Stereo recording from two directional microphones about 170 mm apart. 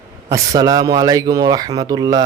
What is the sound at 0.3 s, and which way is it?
Speech, 20° right (ahead or behind).